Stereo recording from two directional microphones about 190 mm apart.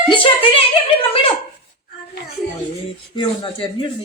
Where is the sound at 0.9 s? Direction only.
30° left (ahead or behind).